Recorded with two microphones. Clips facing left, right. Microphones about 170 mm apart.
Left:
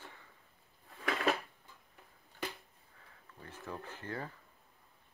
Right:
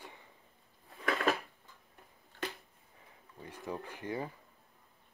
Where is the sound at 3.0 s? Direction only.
15° right (ahead or behind).